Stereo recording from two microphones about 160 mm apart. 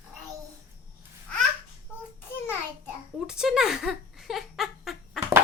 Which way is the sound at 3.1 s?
5° right (ahead or behind).